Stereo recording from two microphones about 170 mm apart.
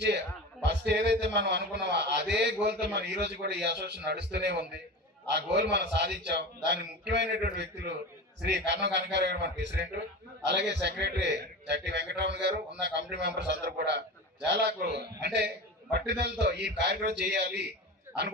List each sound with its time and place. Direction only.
0.6 s a man's voice: 85° right
10.4 s a man's voice: 90° right